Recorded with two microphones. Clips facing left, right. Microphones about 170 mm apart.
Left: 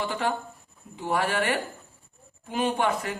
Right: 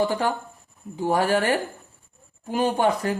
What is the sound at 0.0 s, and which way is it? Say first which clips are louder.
A man's voice: right 5 dB; 40° right (ahead or behind).